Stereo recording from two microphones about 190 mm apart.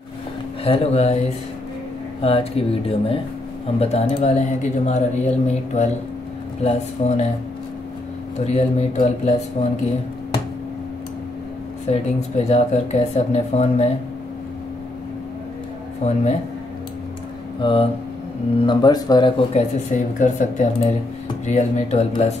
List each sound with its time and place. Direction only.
0.7 s speech: 30° left (ahead or behind)
2.2 s speech: 30° left (ahead or behind)
8.5 s speech: 35° left (ahead or behind)
11.9 s speech: 35° left (ahead or behind)
16.0 s speech: 35° left (ahead or behind)
17.6 s speech: 25° left (ahead or behind)
20.2 s speech: 40° left (ahead or behind)